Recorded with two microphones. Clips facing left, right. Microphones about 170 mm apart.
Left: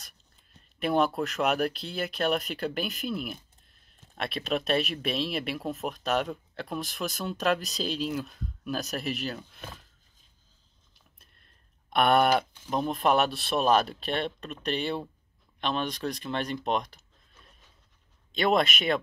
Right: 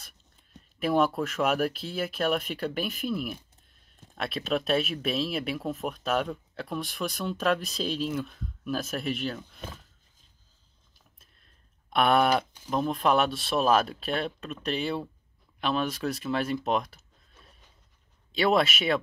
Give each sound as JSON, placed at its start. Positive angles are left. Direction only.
{"t": 0.7, "sound": "speech", "side_deg": 0}
{"t": 11.9, "sound": "speech", "side_deg": 0}
{"t": 18.3, "sound": "speech", "side_deg": -5}